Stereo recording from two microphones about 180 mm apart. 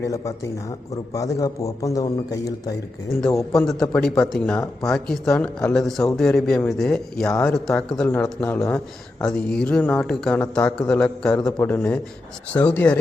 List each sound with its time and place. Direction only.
0.0 s a man's voice: 15° left (ahead or behind)
3.7 s a man's voice: 5° left (ahead or behind)